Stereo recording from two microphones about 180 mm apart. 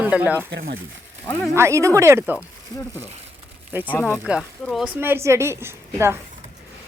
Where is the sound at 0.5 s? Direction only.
55° right (ahead or behind).